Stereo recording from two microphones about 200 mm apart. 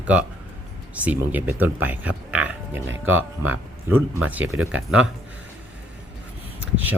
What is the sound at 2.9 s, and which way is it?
Speech, 90° right.